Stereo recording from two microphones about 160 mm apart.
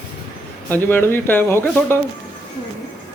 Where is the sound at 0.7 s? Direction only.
10° left (ahead or behind).